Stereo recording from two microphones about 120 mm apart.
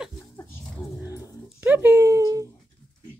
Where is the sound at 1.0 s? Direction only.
20° right (ahead or behind).